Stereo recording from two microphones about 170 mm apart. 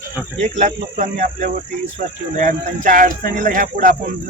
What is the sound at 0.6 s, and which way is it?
Speech, 50° right (ahead or behind).